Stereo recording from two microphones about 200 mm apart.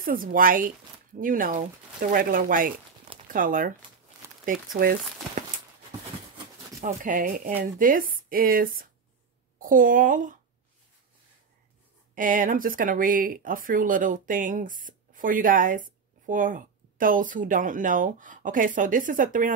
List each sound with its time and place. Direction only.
0.0 s speech: 45° right (ahead or behind)
6.8 s a woman's voice: 40° right (ahead or behind)
12.2 s speech: 45° right (ahead or behind)